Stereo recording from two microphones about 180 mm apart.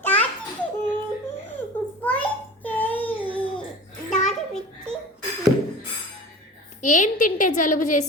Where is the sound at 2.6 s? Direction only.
10° left (ahead or behind).